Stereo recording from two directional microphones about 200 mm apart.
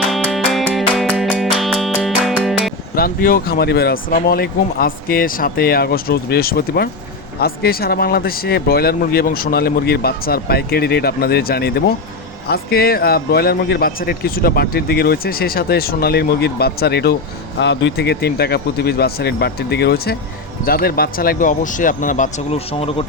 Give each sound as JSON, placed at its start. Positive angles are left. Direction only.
{"t": 0.1, "sound": "music", "side_deg": 0}
{"t": 2.9, "sound": "a man's voice", "side_deg": 45}